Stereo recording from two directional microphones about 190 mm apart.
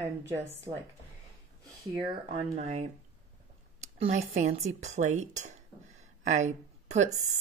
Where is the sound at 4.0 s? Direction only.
40° right (ahead or behind).